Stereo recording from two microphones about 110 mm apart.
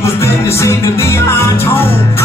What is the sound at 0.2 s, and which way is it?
Music, 25° left (ahead or behind).